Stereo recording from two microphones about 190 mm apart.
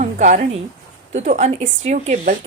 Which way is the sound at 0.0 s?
40° right (ahead or behind).